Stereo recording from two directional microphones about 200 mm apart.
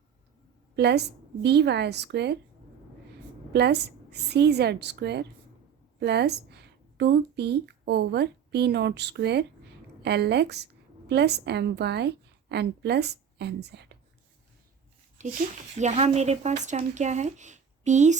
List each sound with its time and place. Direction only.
0.8 s a woman's voice: 55° right (ahead or behind)
3.5 s a woman's voice: 55° right (ahead or behind)
15.2 s a woman's voice: 40° right (ahead or behind)